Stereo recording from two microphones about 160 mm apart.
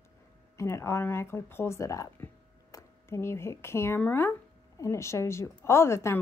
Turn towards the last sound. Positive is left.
turn(degrees=15)  # may be behind; listen again after turning